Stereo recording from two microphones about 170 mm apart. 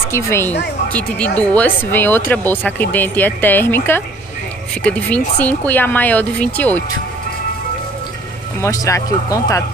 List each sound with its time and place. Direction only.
0.1 s speech: 15° left (ahead or behind)
8.5 s speech: 20° left (ahead or behind)